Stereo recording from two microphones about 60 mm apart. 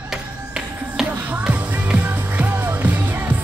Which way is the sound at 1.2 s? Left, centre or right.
Right.